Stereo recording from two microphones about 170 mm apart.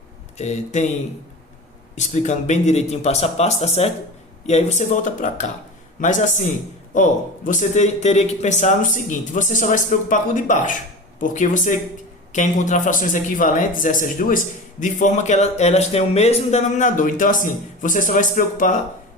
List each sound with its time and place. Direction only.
0.3 s speech: 45° left (ahead or behind)
2.0 s speech: 45° left (ahead or behind)